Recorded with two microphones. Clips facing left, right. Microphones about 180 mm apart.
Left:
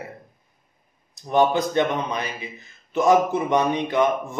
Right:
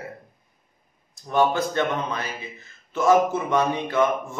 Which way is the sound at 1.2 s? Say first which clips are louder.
Left 2 dB; 20° left (ahead or behind).